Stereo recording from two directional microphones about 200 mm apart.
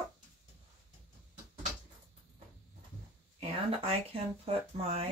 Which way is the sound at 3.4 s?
30° right (ahead or behind).